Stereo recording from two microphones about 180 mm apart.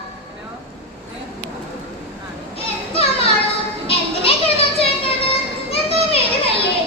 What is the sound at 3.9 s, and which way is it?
Children playing, 35° left (ahead or behind).